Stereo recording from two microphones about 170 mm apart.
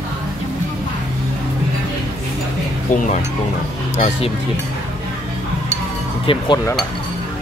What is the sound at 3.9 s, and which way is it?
Speech, 40° left (ahead or behind).